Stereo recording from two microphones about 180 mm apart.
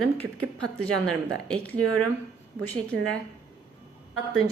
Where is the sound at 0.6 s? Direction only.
5° left (ahead or behind).